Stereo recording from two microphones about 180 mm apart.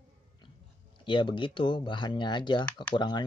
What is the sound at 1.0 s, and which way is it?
Speech, 25° left (ahead or behind).